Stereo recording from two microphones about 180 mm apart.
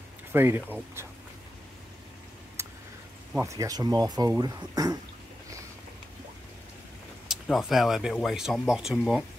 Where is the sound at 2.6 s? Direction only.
15° right (ahead or behind).